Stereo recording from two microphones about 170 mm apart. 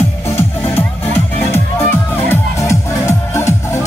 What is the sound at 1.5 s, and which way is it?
Music, 15° left (ahead or behind).